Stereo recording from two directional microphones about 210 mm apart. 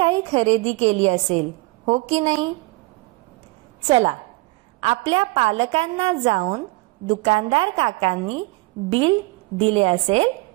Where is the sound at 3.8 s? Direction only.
25° right (ahead or behind).